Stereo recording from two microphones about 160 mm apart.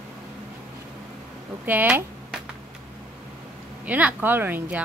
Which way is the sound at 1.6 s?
10° right (ahead or behind).